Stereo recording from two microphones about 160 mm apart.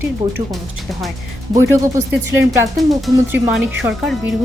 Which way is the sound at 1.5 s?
20° right (ahead or behind).